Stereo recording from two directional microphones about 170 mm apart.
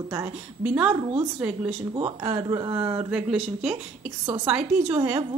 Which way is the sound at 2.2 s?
20° right (ahead or behind).